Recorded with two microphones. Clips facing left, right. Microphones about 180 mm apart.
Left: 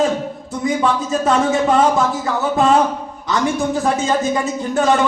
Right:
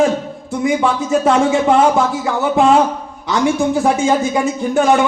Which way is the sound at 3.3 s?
10° right (ahead or behind).